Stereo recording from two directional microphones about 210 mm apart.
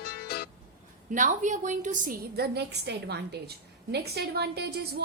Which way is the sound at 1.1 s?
35° right (ahead or behind).